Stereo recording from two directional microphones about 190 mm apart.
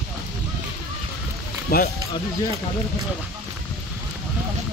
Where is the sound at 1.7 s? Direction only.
50° left (ahead or behind).